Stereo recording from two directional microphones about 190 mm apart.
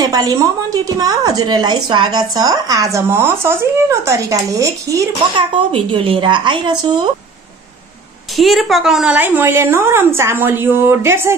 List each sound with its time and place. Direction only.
0.0 s speech: 20° right (ahead or behind)
5.7 s speech: 30° right (ahead or behind)
8.4 s speech: centre (ahead or behind)